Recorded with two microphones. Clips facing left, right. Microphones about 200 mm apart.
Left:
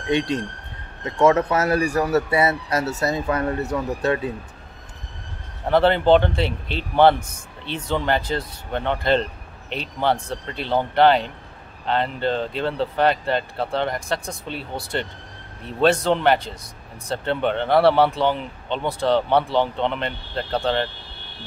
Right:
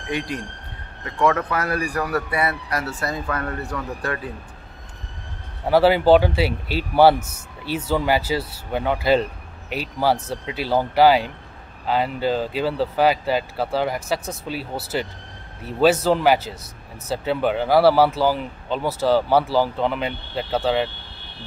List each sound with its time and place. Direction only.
0.1 s speech: 25° left (ahead or behind)
5.7 s speech: 5° right (ahead or behind)